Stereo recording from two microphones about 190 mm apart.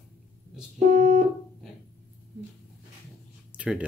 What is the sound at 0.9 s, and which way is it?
Music, 40° right (ahead or behind).